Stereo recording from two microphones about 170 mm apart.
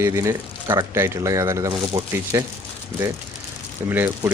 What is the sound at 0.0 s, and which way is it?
Speech, 15° right (ahead or behind).